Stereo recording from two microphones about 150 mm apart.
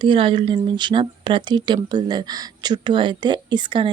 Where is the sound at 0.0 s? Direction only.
35° right (ahead or behind).